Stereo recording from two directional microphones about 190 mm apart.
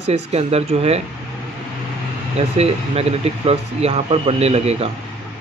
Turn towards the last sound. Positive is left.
turn(degrees=-35)  # may be behind; listen again after turning